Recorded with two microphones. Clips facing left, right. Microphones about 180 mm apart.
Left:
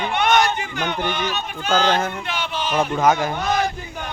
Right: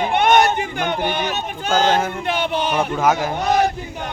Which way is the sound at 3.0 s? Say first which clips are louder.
Even; 5° right (ahead or behind).